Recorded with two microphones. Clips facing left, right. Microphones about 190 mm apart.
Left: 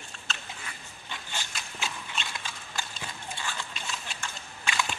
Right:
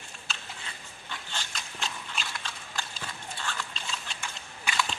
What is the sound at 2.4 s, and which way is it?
Horse, 10° left (ahead or behind).